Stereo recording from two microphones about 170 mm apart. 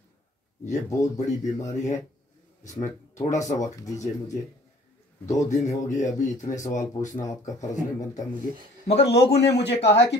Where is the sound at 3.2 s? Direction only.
20° left (ahead or behind).